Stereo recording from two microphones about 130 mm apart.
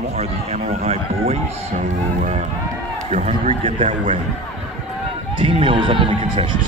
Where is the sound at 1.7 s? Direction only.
80° right.